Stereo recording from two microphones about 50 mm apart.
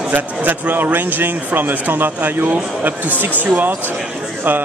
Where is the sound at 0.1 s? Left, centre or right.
Right.